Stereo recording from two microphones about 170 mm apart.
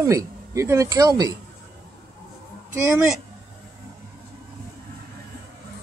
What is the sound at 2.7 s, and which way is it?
Speech, 15° right (ahead or behind).